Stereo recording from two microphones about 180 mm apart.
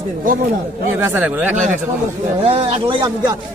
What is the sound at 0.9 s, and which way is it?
Speech, 15° right (ahead or behind).